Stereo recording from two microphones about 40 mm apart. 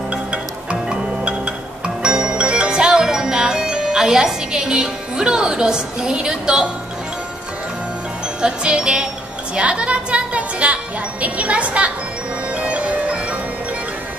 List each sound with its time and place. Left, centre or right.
0.1 s music: right
8.4 s jingle bell: right
9.6 s speech: right
12.5 s music: right